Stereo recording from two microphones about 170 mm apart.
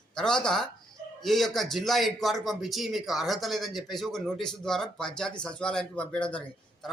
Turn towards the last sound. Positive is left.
turn(degrees=5)  # may be behind; listen again after turning